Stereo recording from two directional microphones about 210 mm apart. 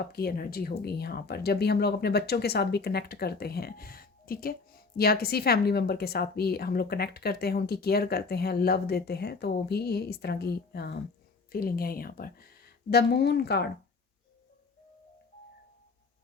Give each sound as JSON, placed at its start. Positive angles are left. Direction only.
{"t": 0.0, "sound": "speech", "side_deg": 45}